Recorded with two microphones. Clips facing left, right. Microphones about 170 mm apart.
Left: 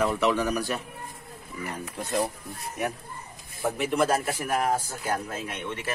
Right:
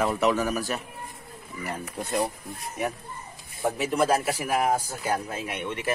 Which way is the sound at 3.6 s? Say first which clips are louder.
Even; centre (ahead or behind).